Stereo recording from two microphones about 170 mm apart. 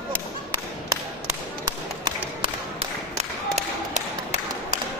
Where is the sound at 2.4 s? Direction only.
35° right (ahead or behind).